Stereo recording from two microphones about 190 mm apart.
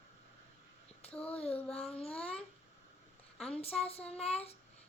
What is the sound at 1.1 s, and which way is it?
Child singing, 5° left (ahead or behind).